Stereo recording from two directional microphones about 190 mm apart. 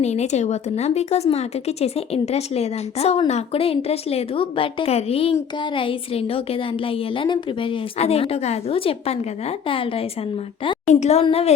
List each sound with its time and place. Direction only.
0.0 s speech: 35° left (ahead or behind)